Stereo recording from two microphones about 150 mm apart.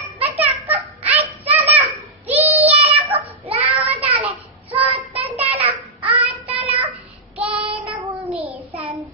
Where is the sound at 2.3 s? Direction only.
10° right (ahead or behind).